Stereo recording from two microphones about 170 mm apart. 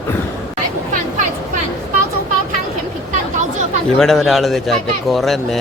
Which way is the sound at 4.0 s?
Centre (ahead or behind).